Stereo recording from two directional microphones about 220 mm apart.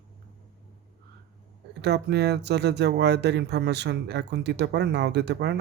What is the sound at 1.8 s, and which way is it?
Speech, 50° right (ahead or behind).